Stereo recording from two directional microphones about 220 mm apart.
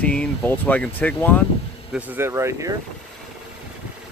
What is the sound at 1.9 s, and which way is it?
Speech, 10° right (ahead or behind).